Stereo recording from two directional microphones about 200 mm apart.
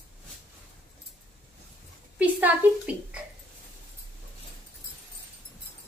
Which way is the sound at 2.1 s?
10° right (ahead or behind).